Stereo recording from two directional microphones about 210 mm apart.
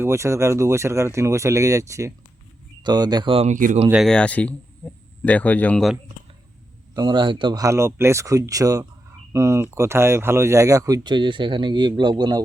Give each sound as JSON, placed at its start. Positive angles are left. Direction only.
{"t": 0.0, "sound": "speech", "side_deg": -15}
{"t": 3.8, "sound": "speech", "side_deg": 0}
{"t": 6.9, "sound": "speech", "side_deg": -20}